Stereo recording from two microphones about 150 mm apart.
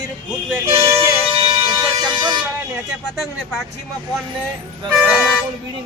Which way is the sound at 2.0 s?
30° right (ahead or behind).